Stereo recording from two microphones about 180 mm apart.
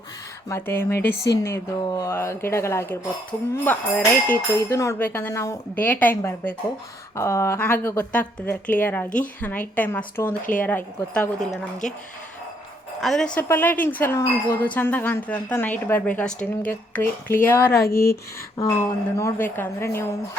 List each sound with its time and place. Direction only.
0.4 s speech: 15° left (ahead or behind)
13.0 s speech: centre (ahead or behind)